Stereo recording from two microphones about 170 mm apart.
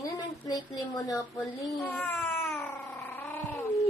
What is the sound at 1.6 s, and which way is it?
Cat, 10° left (ahead or behind).